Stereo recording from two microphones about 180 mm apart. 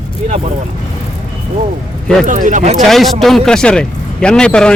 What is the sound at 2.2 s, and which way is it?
Speech, 45° right (ahead or behind).